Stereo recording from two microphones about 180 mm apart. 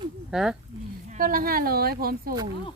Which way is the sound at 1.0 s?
50° right (ahead or behind).